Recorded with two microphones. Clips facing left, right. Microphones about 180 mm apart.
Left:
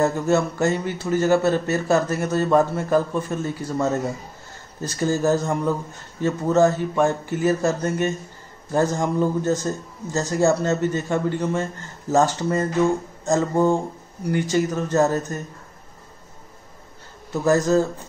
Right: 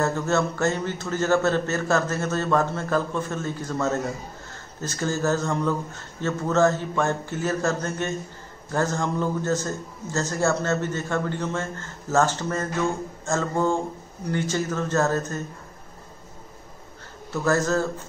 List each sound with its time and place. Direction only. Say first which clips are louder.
0.0 s a man's voice: left 4 dB; 15° left (ahead or behind)
17.3 s a man's voice: left 4 dB; 15° left (ahead or behind)